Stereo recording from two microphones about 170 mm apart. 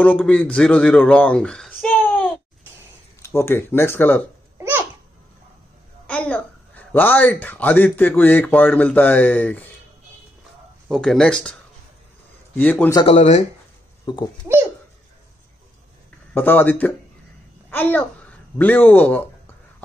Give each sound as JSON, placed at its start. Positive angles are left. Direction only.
{"t": 0.2, "sound": "a child's voice", "side_deg": 5}
{"t": 4.6, "sound": "babbling", "side_deg": -10}
{"t": 6.0, "sound": "a woman's voice", "side_deg": 5}
{"t": 10.9, "sound": "speech", "side_deg": 5}
{"t": 12.5, "sound": "speech", "side_deg": 10}
{"t": 13.0, "sound": "speech", "side_deg": 40}
{"t": 14.0, "sound": "a child's voice", "side_deg": 25}
{"t": 16.3, "sound": "a child's voice", "side_deg": 10}